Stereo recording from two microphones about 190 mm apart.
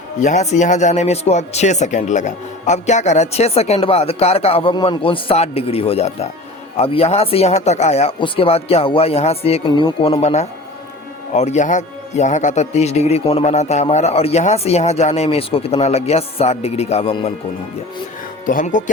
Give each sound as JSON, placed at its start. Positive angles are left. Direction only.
{"t": 0.2, "sound": "speech", "side_deg": 40}
{"t": 18.4, "sound": "speech", "side_deg": 45}